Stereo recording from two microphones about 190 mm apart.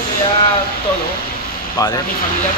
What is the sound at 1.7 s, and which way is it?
Speech, 20° left (ahead or behind).